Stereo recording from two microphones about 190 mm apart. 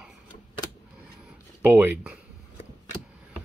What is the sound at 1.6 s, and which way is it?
Speech, 10° right (ahead or behind).